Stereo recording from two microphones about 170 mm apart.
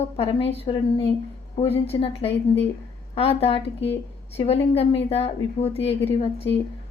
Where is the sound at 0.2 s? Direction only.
35° left (ahead or behind).